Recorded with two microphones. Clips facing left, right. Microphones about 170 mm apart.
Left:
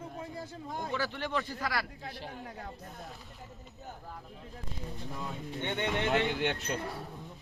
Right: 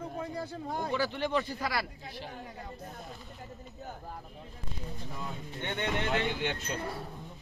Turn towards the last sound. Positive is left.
turn(degrees=0)  # may be behind; listen again after turning